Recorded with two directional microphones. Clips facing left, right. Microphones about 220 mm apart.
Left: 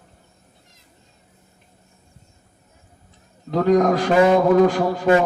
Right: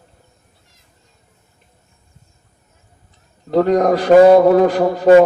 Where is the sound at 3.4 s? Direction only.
50° right (ahead or behind).